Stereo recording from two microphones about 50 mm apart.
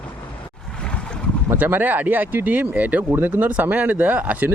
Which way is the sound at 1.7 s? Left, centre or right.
Right.